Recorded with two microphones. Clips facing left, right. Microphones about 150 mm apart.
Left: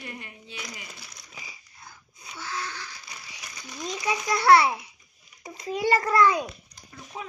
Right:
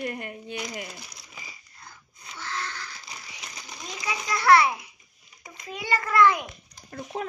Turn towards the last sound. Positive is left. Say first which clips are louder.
# right 7 dB
turn(degrees=-55)  # may be behind; listen again after turning